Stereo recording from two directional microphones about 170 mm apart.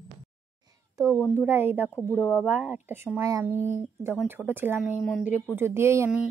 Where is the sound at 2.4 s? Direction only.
10° right (ahead or behind).